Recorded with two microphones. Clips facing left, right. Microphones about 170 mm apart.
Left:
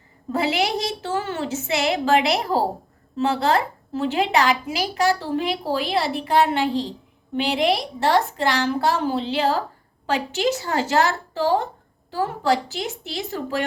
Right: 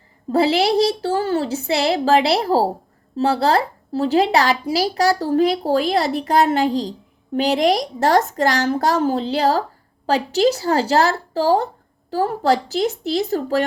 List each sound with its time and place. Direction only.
0.3 s speech: 30° right (ahead or behind)